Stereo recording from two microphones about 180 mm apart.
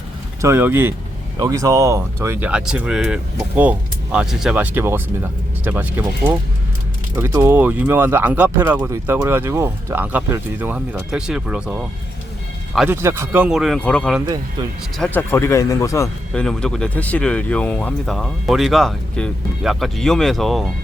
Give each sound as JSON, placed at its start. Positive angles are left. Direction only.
{"t": 0.4, "sound": "speech", "side_deg": -10}
{"t": 7.2, "sound": "speech", "side_deg": -15}
{"t": 12.9, "sound": "speech", "side_deg": -15}
{"t": 15.3, "sound": "speech", "side_deg": 15}
{"t": 16.3, "sound": "speech", "side_deg": 5}